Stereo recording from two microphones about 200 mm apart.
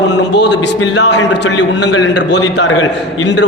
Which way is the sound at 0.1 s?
60° left (ahead or behind).